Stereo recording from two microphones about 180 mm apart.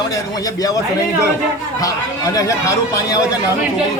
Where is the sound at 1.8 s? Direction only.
20° left (ahead or behind).